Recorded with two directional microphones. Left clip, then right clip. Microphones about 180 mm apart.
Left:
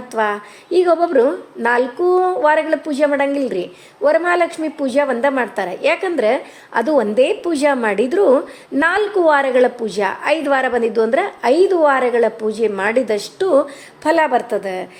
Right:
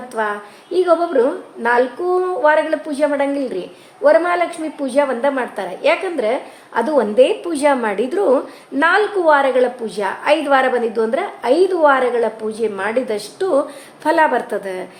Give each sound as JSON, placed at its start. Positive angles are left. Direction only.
{"t": 0.1, "sound": "a woman's voice", "side_deg": 35}